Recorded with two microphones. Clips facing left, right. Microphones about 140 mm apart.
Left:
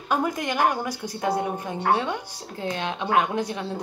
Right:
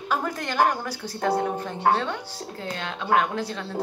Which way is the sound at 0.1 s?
15° left (ahead or behind).